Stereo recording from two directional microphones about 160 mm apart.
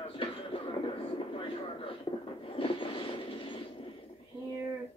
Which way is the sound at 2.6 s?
35° left (ahead or behind).